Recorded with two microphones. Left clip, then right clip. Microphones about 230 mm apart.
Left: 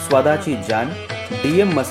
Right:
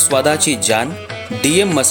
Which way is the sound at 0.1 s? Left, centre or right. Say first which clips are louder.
Left 2 dB; right.